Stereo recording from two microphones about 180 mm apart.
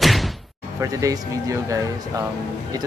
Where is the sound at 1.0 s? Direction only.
20° right (ahead or behind).